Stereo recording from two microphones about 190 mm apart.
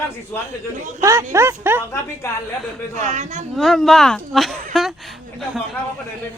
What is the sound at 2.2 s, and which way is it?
Speech, 15° left (ahead or behind).